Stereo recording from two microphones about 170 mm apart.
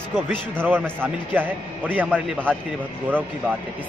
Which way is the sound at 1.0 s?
10° right (ahead or behind).